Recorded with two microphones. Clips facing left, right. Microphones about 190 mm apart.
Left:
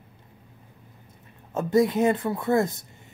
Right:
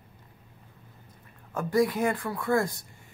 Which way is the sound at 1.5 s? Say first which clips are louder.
Left 4 dB; 25° left (ahead or behind).